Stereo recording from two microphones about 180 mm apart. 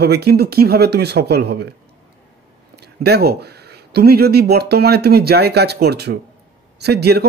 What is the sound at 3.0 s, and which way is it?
Speech, 60° right (ahead or behind).